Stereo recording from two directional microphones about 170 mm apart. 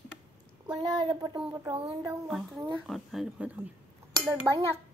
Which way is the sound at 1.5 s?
15° right (ahead or behind).